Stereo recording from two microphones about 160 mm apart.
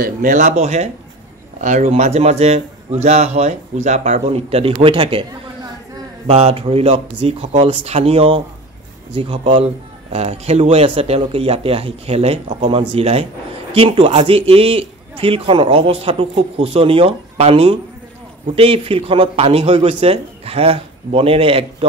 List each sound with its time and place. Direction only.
0.0 s a man's voice: 60° right (ahead or behind); by 21.6 s 35° right (ahead or behind)